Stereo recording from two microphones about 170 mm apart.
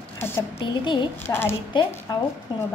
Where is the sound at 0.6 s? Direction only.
25° left (ahead or behind).